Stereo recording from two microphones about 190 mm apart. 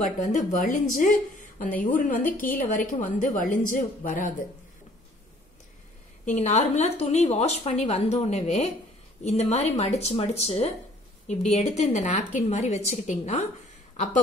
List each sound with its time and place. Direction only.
0.0 s a woman's voice: 40° left (ahead or behind)
6.2 s a woman's voice: 35° left (ahead or behind)